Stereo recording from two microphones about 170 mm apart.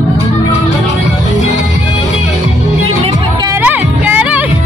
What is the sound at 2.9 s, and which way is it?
Music, 30° right (ahead or behind).